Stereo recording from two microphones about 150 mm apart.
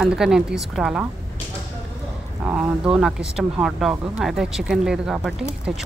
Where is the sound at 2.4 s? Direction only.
10° right (ahead or behind).